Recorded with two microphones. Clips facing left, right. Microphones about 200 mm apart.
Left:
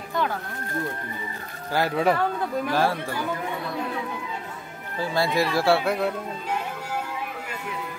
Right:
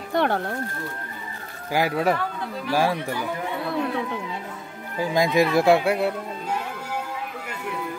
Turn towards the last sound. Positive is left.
turn(degrees=-10)  # may be behind; listen again after turning